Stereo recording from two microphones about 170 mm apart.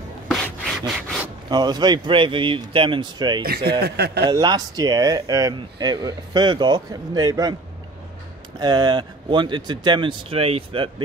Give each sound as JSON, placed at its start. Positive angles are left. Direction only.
{"t": 0.3, "sound": "rub", "side_deg": 0}
{"t": 1.5, "sound": "speech", "side_deg": -25}
{"t": 3.4, "sound": "speech", "side_deg": -70}
{"t": 4.3, "sound": "speech", "side_deg": -20}
{"t": 8.5, "sound": "speech", "side_deg": -25}